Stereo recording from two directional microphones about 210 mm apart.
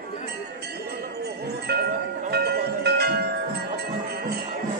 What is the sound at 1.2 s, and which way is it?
Music, 50° right (ahead or behind).